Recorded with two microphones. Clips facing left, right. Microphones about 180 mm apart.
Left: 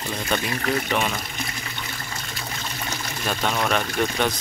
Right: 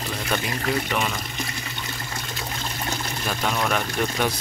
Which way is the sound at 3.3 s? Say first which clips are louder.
Left 1 dB; centre (ahead or behind).